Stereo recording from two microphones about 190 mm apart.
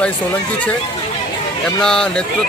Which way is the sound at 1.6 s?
5° left (ahead or behind).